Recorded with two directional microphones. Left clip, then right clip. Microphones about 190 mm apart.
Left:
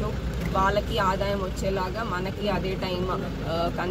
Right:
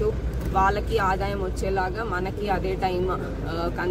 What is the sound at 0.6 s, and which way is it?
Speech, 20° right (ahead or behind).